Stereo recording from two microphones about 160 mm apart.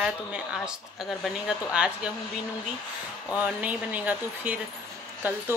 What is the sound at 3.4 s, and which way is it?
A woman's voice, 10° right (ahead or behind).